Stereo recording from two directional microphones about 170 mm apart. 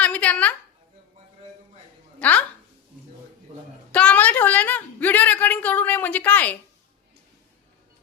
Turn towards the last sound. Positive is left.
turn(degrees=10)  # may be behind; listen again after turning